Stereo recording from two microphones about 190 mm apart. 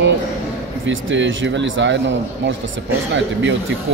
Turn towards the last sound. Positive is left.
turn(degrees=-70)  # may be behind; listen again after turning